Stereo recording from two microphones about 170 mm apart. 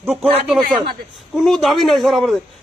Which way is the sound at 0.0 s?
10° right (ahead or behind).